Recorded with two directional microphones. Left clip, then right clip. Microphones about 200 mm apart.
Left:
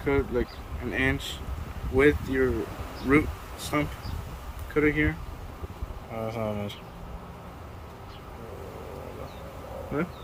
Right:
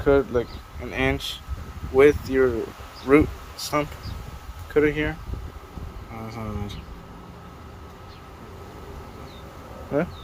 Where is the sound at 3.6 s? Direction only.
25° right (ahead or behind).